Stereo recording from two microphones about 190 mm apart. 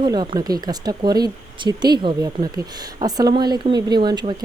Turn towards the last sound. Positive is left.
turn(degrees=-25)  # may be behind; listen again after turning